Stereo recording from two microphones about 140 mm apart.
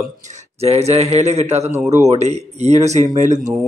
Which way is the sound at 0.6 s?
50° right (ahead or behind).